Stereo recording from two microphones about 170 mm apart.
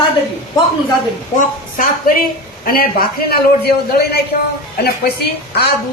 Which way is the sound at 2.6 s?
60° left (ahead or behind).